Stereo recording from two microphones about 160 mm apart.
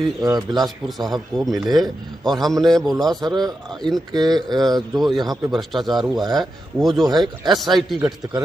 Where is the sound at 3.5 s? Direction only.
25° right (ahead or behind).